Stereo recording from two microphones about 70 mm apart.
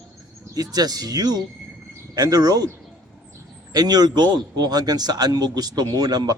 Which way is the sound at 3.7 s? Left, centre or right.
Right.